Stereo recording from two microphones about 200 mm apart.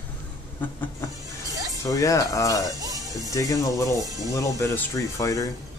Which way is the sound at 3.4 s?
15° left (ahead or behind).